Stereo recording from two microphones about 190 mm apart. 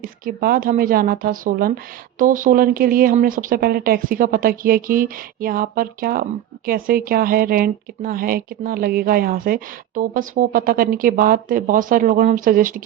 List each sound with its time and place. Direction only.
0.0 s speech: 50° right (ahead or behind)